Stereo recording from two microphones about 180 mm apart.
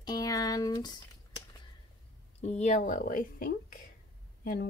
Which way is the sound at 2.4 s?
40° left (ahead or behind).